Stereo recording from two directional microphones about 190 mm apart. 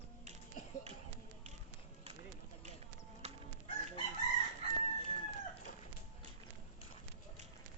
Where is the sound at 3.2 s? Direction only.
35° right (ahead or behind).